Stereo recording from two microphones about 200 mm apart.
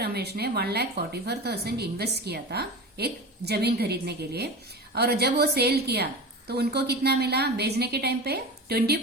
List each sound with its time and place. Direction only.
0.0 s a woman's voice: 55° right (ahead or behind)